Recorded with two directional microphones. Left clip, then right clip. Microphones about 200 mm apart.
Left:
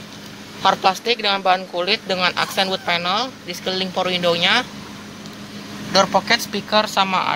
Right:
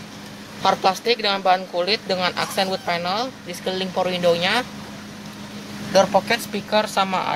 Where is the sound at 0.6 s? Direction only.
5° right (ahead or behind).